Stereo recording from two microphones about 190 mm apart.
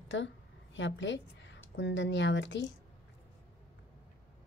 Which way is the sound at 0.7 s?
75° left (ahead or behind).